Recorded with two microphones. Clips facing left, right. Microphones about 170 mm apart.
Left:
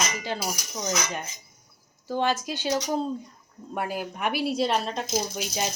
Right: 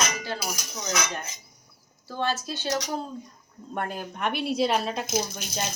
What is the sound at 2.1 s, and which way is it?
Speech, 15° left (ahead or behind).